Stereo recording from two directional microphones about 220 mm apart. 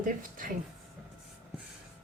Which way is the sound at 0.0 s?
40° right (ahead or behind).